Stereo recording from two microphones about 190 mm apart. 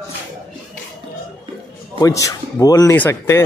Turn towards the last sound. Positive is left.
turn(degrees=10)  # may be behind; listen again after turning